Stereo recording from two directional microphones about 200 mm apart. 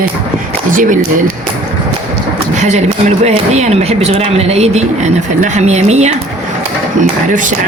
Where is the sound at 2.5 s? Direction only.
35° right (ahead or behind).